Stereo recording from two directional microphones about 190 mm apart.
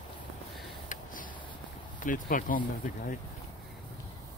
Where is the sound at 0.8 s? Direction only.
45° left (ahead or behind).